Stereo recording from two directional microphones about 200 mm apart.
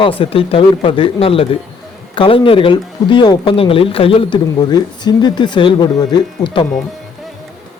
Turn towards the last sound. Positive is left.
turn(degrees=20)  # may be behind; listen again after turning